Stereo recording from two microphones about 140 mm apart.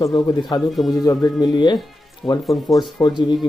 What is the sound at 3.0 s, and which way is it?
Speech, 30° left (ahead or behind).